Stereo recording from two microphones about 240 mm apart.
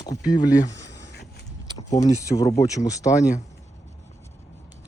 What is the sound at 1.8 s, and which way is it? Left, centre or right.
Speech, left.